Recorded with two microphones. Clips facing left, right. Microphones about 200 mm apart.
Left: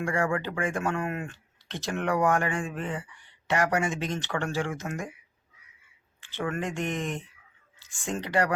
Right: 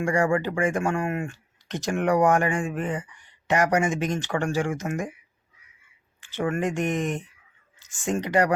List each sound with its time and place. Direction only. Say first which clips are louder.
0.0 s speech: right 5 dB; 15° right (ahead or behind)
6.1 s speech: right 5 dB; 15° right (ahead or behind)